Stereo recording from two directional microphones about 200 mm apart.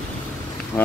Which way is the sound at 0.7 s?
20° left (ahead or behind).